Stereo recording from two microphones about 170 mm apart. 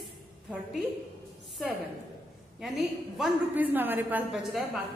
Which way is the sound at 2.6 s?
Centre (ahead or behind).